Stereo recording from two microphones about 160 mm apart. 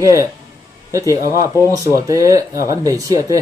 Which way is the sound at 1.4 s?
20° right (ahead or behind).